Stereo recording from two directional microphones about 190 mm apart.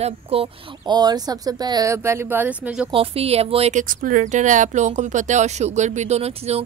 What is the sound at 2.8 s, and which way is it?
Speech, 30° right (ahead or behind).